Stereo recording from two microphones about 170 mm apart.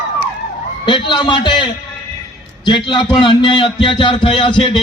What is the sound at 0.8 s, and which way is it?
A man's voice, 25° left (ahead or behind).